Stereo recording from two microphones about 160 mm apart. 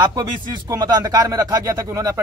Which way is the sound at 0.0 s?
25° right (ahead or behind).